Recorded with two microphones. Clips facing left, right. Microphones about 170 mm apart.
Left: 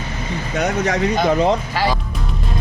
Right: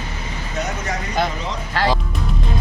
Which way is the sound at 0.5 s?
75° left (ahead or behind).